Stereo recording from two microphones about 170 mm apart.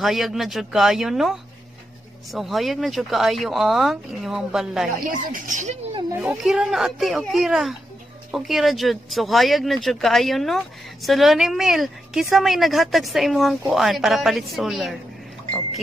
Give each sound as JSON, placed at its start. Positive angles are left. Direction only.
{"t": 0.0, "sound": "speech", "side_deg": 0}
{"t": 5.0, "sound": "speech", "side_deg": -55}
{"t": 6.2, "sound": "speech", "side_deg": 0}